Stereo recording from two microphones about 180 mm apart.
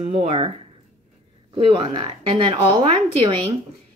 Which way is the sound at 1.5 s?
30° right (ahead or behind).